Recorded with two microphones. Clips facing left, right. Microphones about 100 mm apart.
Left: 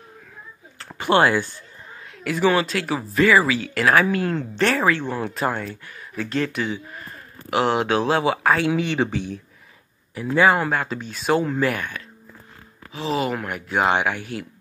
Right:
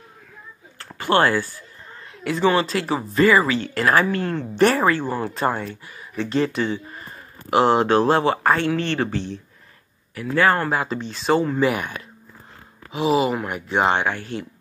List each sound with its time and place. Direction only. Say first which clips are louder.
0.9 s speech: left 1 dB; 20° left (ahead or behind)
2.1 s speech: even; 5° left (ahead or behind)
4.6 s speech: right 4 dB; 10° right (ahead or behind); by 10.7 s 10° left (ahead or behind)
10.7 s speech: right 1 dB; centre (ahead or behind)
12.9 s speech: right 6 dB; 15° right (ahead or behind)
13.2 s speech: right 3 dB; centre (ahead or behind)